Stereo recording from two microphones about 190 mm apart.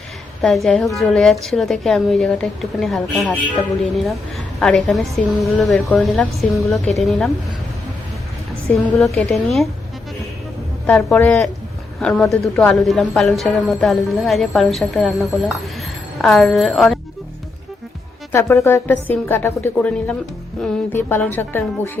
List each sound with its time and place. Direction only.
0.4 s a woman's voice: centre (ahead or behind)
8.9 s a woman's voice: centre (ahead or behind)
10.8 s a woman's voice: 5° left (ahead or behind)
18.3 s a woman's voice: 15° left (ahead or behind)